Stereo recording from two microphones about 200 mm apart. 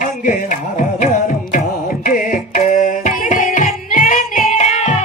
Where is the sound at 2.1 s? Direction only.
45° left (ahead or behind).